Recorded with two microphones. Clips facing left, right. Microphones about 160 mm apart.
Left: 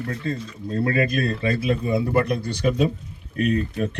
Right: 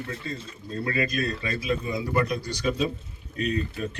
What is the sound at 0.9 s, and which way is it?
Speech, 55° left (ahead or behind).